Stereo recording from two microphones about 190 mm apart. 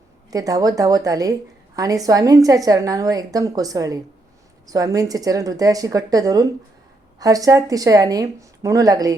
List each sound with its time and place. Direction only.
0.3 s a woman's voice: 20° right (ahead or behind)